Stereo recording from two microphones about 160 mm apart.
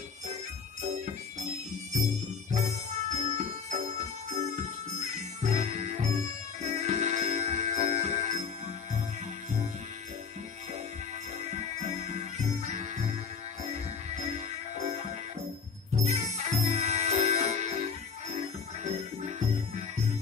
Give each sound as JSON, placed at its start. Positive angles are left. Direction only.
{"t": 2.5, "sound": "music", "side_deg": -45}
{"t": 11.4, "sound": "music", "side_deg": -45}
{"t": 14.1, "sound": "jingle bell", "side_deg": -45}
{"t": 16.0, "sound": "music", "side_deg": -45}
{"t": 18.9, "sound": "music", "side_deg": -45}